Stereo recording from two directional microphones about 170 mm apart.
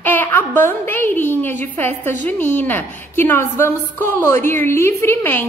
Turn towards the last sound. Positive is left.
turn(degrees=15)  # may be behind; listen again after turning